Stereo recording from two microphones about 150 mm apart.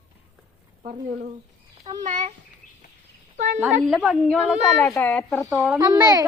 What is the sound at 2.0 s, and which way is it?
Speech, 50° right (ahead or behind).